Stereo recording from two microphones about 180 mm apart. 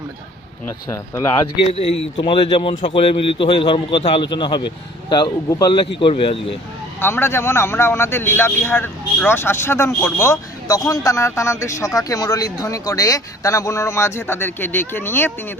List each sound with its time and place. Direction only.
1.7 s speech: 30° left (ahead or behind)
7.0 s speech: 15° left (ahead or behind)